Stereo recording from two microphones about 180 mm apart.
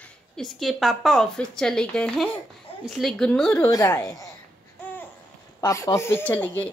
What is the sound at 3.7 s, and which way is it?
Speech, 15° left (ahead or behind).